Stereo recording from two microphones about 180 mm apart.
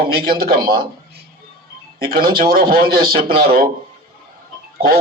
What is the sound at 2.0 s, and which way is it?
A man's voice, 55° right (ahead or behind).